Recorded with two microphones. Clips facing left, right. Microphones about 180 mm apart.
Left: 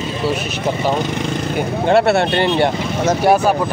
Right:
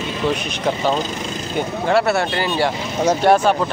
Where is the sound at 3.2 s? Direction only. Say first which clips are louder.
Left 1 dB; 10° left (ahead or behind).